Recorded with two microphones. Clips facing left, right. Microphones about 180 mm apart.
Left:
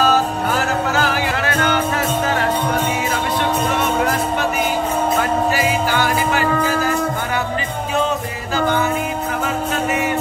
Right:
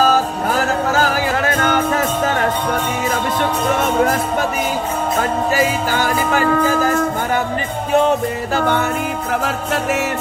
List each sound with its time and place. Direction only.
0.0 s music: 40° right (ahead or behind)
5.9 s music: 45° right (ahead or behind)